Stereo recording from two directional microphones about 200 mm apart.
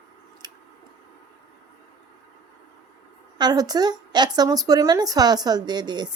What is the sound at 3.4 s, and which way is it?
Speech, 20° right (ahead or behind).